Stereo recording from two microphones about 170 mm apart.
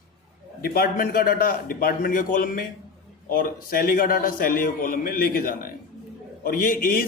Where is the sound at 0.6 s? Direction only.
60° left (ahead or behind).